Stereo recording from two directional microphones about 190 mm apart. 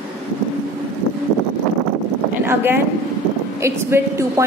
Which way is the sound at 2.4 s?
10° right (ahead or behind).